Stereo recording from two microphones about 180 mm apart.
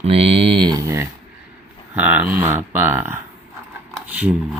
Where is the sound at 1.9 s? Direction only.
10° right (ahead or behind).